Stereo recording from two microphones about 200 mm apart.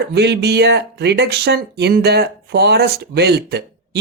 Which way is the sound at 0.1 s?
55° right (ahead or behind).